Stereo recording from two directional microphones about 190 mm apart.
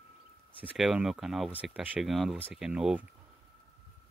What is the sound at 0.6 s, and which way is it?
Speech, 5° right (ahead or behind).